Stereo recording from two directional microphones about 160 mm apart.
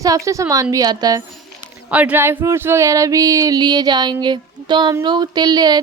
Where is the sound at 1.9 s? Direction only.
10° right (ahead or behind); by 4.1 s 25° right (ahead or behind).